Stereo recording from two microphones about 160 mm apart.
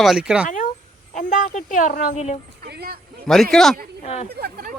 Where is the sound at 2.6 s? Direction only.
80° right.